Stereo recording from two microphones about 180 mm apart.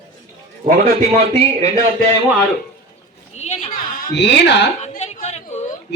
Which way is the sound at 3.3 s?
40° left (ahead or behind).